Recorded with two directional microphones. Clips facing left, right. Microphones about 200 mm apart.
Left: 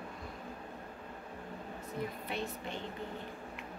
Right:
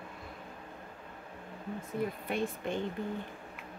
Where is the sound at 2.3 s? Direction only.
50° right (ahead or behind).